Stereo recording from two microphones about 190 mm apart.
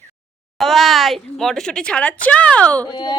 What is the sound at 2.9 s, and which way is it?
Speech, 25° left (ahead or behind).